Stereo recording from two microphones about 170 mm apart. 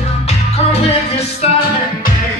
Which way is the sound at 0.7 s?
40° left (ahead or behind).